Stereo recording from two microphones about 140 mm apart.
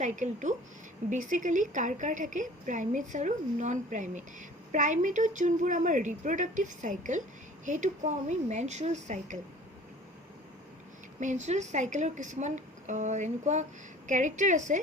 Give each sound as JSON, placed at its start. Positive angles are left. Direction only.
{"t": 0.0, "sound": "a woman's voice", "side_deg": -60}
{"t": 11.2, "sound": "a woman's voice", "side_deg": -60}